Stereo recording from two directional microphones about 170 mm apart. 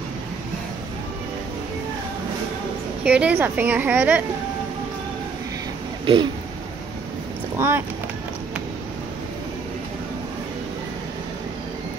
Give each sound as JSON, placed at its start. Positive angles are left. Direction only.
{"t": 3.0, "sound": "a woman's voice", "side_deg": -5}
{"t": 6.1, "sound": "speech", "side_deg": -35}
{"t": 7.5, "sound": "speech", "side_deg": -15}